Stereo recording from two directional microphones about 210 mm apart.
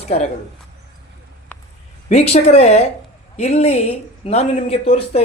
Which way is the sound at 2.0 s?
30° left (ahead or behind).